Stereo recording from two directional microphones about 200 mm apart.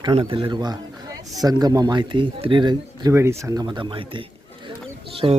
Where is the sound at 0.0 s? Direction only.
25° right (ahead or behind).